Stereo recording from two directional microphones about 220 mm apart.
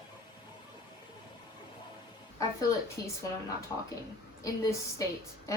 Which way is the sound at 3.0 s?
15° left (ahead or behind).